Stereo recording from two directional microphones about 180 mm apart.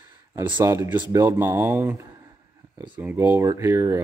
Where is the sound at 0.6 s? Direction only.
15° right (ahead or behind).